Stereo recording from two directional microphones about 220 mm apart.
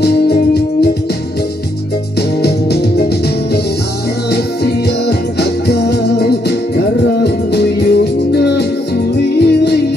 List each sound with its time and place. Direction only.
0.0 s music: 50° left (ahead or behind)
2.4 s organ: 50° left (ahead or behind)
4.3 s music: 50° left (ahead or behind)
7.2 s music: 50° left (ahead or behind)